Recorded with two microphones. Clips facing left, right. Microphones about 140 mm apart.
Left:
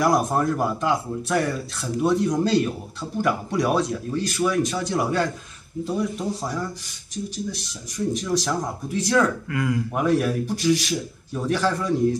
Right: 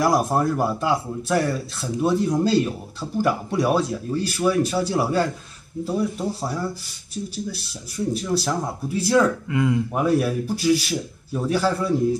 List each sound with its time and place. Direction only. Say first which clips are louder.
0.0 s speech: right 1 dB; 5° right (ahead or behind)
7.9 s speech: even; 5° right (ahead or behind)
9.5 s speech: right 3 dB; 20° right (ahead or behind)
10.0 s speech: even; 5° right (ahead or behind)